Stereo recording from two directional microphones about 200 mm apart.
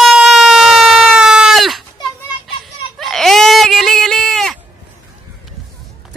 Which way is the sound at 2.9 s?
Centre (ahead or behind).